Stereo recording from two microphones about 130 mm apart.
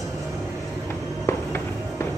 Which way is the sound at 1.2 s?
20° left (ahead or behind).